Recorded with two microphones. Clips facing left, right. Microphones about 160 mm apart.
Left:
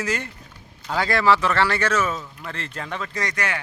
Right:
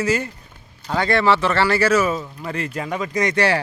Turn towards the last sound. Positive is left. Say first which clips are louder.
# right 9 dB
turn(degrees=-35)  # may be behind; listen again after turning